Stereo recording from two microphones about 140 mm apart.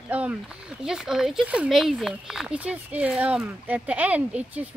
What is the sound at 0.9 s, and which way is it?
Speech, 5° right (ahead or behind).